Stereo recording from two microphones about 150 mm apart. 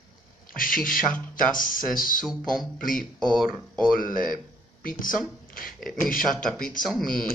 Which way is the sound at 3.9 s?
65° left (ahead or behind).